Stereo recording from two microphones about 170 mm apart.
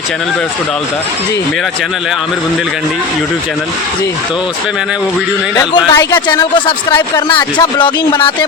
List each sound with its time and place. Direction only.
5.5 s speech: 20° left (ahead or behind)